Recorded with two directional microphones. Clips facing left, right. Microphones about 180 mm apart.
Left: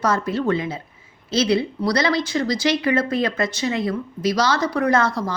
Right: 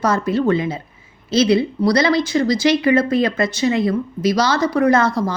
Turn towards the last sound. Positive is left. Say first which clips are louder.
# right 4 dB
turn(degrees=-10)  # may be behind; listen again after turning